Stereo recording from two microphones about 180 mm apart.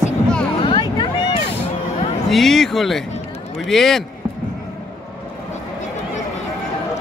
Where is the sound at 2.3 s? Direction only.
Centre (ahead or behind).